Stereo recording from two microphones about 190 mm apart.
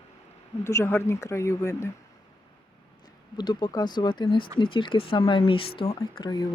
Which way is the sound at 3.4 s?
25° left (ahead or behind).